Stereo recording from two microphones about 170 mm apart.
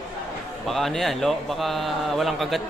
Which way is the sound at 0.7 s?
Centre (ahead or behind).